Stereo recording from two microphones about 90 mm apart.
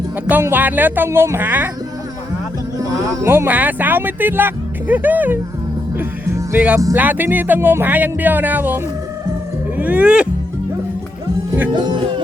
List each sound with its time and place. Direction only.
0.3 s speech: 20° right (ahead or behind)
2.7 s speech: 30° right (ahead or behind)
6.0 s music: 25° right (ahead or behind)
6.9 s speech: 20° right (ahead or behind)
11.7 s music: 55° right (ahead or behind)